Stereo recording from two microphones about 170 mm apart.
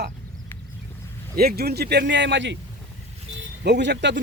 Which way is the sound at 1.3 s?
60° right (ahead or behind).